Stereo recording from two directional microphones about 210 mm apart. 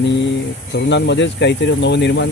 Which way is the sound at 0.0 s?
55° left (ahead or behind).